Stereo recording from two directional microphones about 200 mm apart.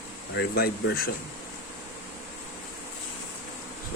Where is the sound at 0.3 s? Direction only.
55° left (ahead or behind).